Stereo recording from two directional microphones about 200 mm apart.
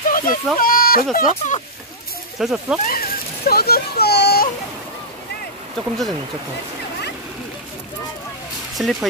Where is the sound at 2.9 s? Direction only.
50° left (ahead or behind).